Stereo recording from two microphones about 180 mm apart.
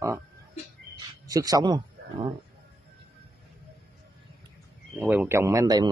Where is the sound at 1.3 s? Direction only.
20° right (ahead or behind).